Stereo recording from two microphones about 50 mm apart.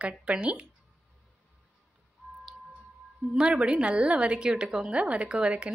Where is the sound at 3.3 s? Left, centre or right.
Centre.